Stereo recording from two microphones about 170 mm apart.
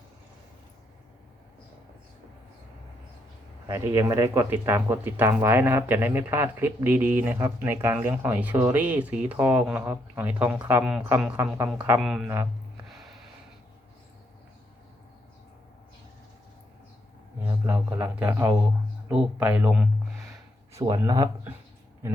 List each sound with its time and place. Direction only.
3.7 s speech: 15° right (ahead or behind)
17.4 s speech: 10° right (ahead or behind)
20.7 s speech: 20° right (ahead or behind)